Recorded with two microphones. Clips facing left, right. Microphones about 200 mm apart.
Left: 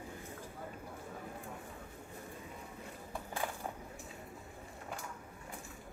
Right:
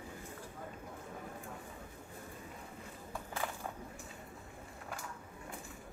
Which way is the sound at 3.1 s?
15° left (ahead or behind).